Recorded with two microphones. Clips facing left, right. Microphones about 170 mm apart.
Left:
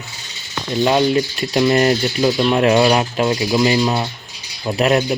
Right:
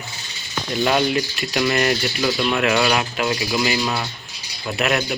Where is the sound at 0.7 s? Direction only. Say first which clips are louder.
Left 4 dB; 25° left (ahead or behind).